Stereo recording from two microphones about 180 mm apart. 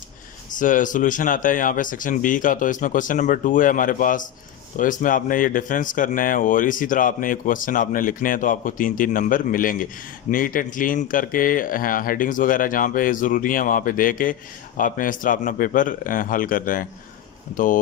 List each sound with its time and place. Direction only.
0.6 s speech: 45° left (ahead or behind)